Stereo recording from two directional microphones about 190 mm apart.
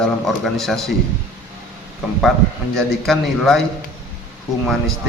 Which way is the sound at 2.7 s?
Centre (ahead or behind).